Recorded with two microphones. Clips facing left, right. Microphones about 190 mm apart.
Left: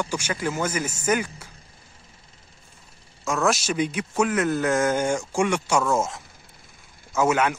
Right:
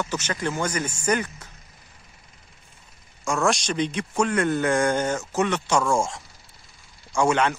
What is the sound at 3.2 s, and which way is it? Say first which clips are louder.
Speech: even; centre (ahead or behind).